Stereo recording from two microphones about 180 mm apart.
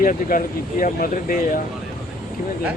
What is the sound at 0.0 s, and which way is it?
Speech, 50° left (ahead or behind).